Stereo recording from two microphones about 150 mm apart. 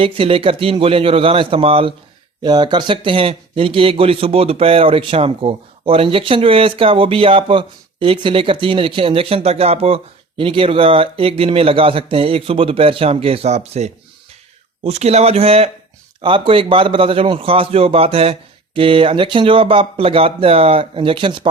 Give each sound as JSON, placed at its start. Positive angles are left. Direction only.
{"t": 0.0, "sound": "speech", "side_deg": -35}
{"t": 2.4, "sound": "a man's voice", "side_deg": -30}